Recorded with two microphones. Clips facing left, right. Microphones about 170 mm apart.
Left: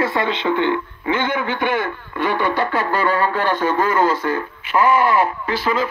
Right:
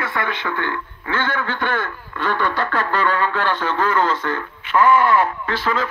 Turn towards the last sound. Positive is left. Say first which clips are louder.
# left 2 dB
turn(degrees=10)  # may be behind; listen again after turning